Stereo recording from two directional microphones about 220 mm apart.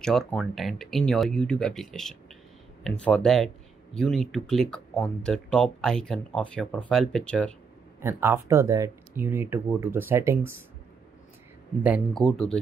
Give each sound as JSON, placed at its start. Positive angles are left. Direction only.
{"t": 0.0, "sound": "speech", "side_deg": 0}
{"t": 8.0, "sound": "speech", "side_deg": -10}
{"t": 11.8, "sound": "speech", "side_deg": -5}